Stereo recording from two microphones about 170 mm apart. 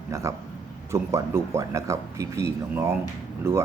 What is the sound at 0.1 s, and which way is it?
A man's voice, 15° right (ahead or behind).